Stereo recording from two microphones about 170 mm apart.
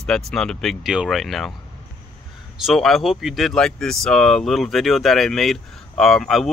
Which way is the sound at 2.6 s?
Centre (ahead or behind).